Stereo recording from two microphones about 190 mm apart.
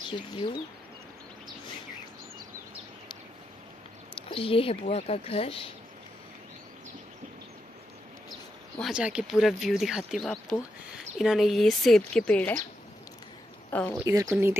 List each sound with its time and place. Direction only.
0.1 s speech: 25° left (ahead or behind)
4.3 s speech: 30° left (ahead or behind)
8.7 s speech: centre (ahead or behind)
13.7 s speech: 10° left (ahead or behind)
14.0 s speech: 15° right (ahead or behind)